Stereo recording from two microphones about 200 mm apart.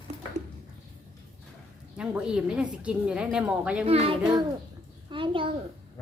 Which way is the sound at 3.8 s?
30° right (ahead or behind).